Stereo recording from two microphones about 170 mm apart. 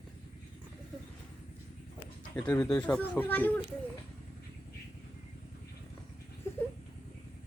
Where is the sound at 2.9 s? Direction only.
10° left (ahead or behind).